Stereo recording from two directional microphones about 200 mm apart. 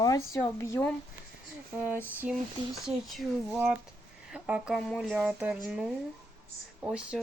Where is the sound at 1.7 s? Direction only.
10° right (ahead or behind).